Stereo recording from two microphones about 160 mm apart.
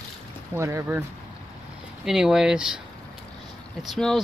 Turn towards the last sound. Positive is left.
turn(degrees=5)  # may be behind; listen again after turning